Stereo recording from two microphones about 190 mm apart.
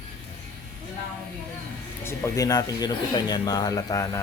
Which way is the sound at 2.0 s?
15° left (ahead or behind).